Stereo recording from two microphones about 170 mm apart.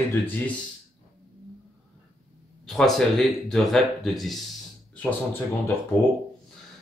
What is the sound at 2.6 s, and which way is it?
Speech, centre (ahead or behind).